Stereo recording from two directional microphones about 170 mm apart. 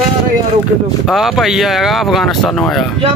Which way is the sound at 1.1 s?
Centre (ahead or behind).